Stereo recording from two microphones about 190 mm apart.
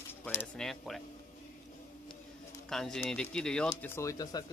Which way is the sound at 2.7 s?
Centre (ahead or behind).